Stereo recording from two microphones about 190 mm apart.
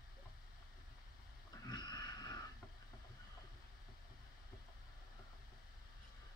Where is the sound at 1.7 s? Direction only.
20° left (ahead or behind).